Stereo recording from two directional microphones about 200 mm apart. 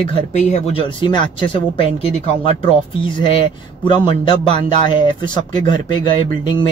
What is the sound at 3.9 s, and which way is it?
Speech, 25° left (ahead or behind).